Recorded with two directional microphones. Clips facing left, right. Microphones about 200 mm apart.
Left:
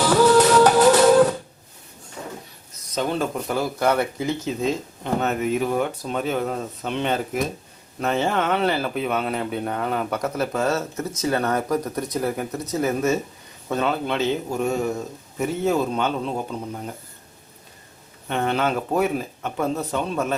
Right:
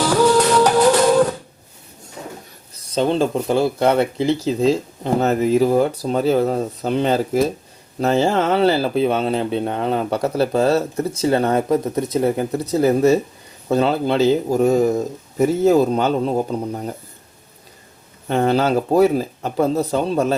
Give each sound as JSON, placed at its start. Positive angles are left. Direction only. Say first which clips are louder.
{"t": 0.3, "sound": "music", "louder": "even", "side_deg": 5}
{"t": 2.2, "sound": "a sound", "louder": "right 2 dB", "side_deg": -20}
{"t": 2.7, "sound": "speech", "louder": "right 6 dB", "side_deg": -30}
{"t": 18.3, "sound": "speech", "louder": "right 6 dB", "side_deg": -35}